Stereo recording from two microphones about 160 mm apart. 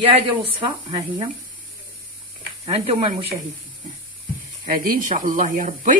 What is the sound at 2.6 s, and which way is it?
Speech, 35° right (ahead or behind).